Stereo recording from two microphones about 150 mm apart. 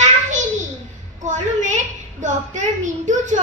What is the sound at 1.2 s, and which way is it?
Speech, 55° right (ahead or behind).